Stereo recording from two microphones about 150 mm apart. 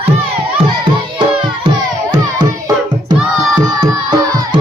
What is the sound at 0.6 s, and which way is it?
Music, 35° right (ahead or behind).